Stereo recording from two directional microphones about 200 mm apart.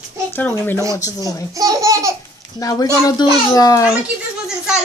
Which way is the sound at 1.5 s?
15° right (ahead or behind).